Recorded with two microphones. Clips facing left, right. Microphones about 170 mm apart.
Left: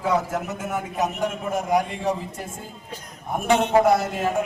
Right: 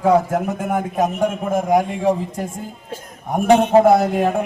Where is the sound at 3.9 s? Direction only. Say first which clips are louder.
Right 6 dB; 60° right (ahead or behind).